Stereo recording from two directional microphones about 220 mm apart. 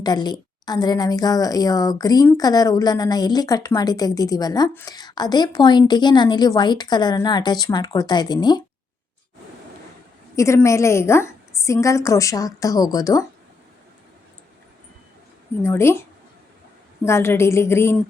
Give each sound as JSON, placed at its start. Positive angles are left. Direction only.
{"t": 0.0, "sound": "a woman's voice", "side_deg": 20}
{"t": 10.3, "sound": "a woman's voice", "side_deg": 15}
{"t": 15.6, "sound": "a woman's voice", "side_deg": 10}
{"t": 17.1, "sound": "a woman's voice", "side_deg": 10}